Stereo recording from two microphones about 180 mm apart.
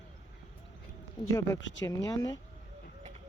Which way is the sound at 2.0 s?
20° left (ahead or behind).